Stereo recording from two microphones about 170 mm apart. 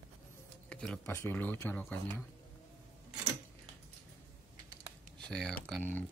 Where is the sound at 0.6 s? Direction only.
5° left (ahead or behind).